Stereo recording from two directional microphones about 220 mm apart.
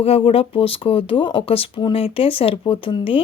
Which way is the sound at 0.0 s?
25° left (ahead or behind).